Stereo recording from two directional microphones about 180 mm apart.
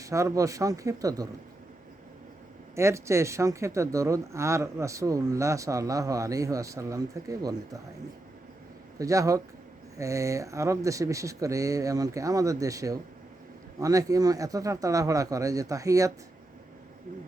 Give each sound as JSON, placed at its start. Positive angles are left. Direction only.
{"t": 0.0, "sound": "speech", "side_deg": -15}
{"t": 2.7, "sound": "speech", "side_deg": -15}
{"t": 9.0, "sound": "speech", "side_deg": -20}